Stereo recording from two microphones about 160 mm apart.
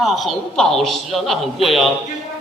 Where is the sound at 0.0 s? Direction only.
Centre (ahead or behind).